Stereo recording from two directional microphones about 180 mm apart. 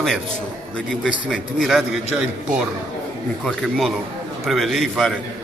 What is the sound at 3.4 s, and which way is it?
A man's voice, centre (ahead or behind).